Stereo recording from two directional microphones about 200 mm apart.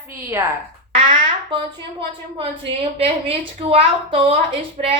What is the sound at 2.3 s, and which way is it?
A woman's voice, 30° right (ahead or behind).